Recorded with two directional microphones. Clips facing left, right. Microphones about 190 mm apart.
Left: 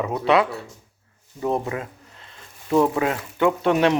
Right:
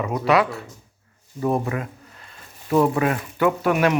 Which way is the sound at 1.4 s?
20° left (ahead or behind).